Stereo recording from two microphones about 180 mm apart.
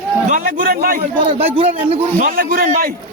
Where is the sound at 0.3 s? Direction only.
50° right (ahead or behind).